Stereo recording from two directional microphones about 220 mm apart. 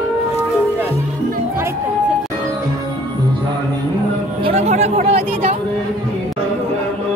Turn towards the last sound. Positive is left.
turn(degrees=-35)  # may be behind; listen again after turning